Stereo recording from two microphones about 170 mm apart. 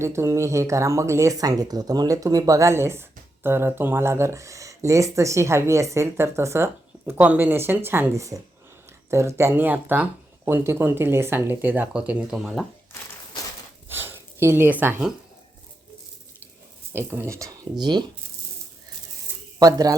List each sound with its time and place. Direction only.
0.0 s speech: 15° right (ahead or behind)
13.8 s a sound: 15° right (ahead or behind)
16.9 s speech: 15° right (ahead or behind)
19.5 s speech: 20° right (ahead or behind)